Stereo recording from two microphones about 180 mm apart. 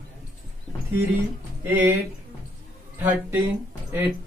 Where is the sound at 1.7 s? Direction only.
10° right (ahead or behind).